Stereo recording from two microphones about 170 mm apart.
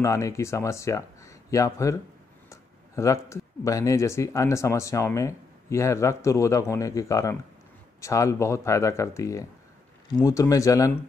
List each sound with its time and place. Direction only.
0.0 s speech: 15° left (ahead or behind)